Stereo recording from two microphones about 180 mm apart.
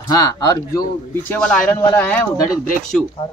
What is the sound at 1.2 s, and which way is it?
Speech, 5° left (ahead or behind).